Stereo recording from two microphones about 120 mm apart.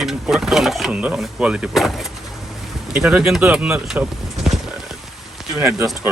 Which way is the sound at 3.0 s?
5° right (ahead or behind).